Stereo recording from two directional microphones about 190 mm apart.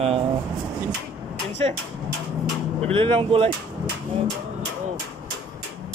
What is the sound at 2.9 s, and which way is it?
Speech, 30° right (ahead or behind).